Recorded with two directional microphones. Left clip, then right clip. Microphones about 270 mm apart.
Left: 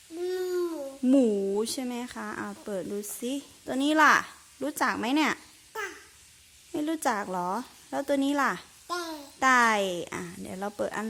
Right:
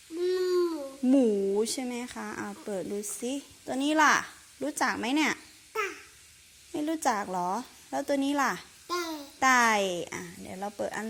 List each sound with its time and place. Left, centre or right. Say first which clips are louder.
0.3 s a child's voice: right 3 dB; centre
6.7 s a woman's voice: even; centre